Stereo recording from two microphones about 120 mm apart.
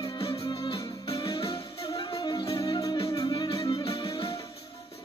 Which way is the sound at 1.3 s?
30° left (ahead or behind).